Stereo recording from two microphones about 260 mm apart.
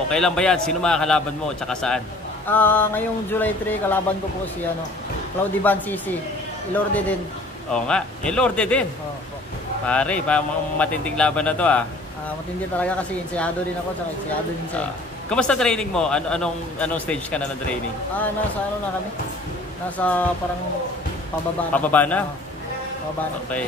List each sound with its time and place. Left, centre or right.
0.1 s a man's voice: centre
2.4 s a sound: centre
5.6 s a sound: centre
6.7 s a man's voice: centre
9.8 s a man's voice: centre
15.2 s a man's voice: centre
20.0 s a man's voice: centre
21.7 s a man's voice: centre